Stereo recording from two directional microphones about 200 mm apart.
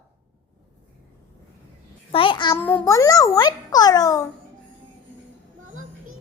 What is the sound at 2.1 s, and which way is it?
Speech, 25° left (ahead or behind).